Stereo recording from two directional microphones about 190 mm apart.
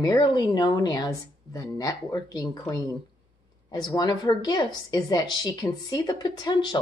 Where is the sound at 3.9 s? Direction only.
20° left (ahead or behind).